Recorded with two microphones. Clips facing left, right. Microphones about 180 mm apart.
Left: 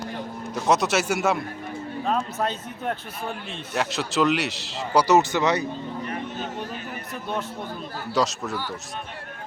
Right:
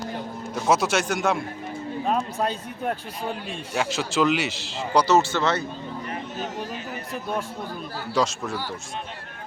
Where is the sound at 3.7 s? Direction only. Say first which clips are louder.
Even; centre (ahead or behind).